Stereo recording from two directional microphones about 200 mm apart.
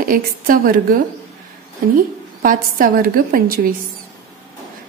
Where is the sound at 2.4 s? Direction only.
45° right (ahead or behind).